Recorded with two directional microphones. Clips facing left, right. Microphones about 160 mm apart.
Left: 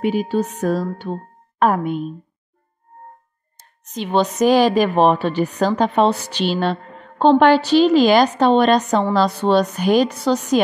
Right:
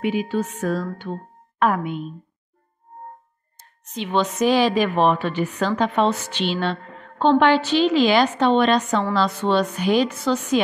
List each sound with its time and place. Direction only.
0.0 s a woman's voice: 40° left (ahead or behind)
3.8 s a woman's voice: 40° left (ahead or behind)